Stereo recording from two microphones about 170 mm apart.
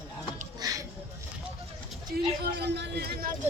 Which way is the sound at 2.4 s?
75° right (ahead or behind).